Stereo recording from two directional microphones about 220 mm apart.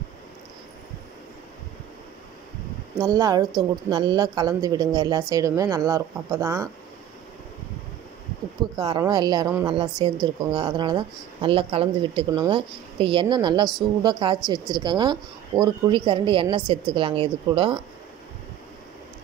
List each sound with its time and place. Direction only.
3.0 s speech: 15° right (ahead or behind)
8.7 s speech: 20° right (ahead or behind)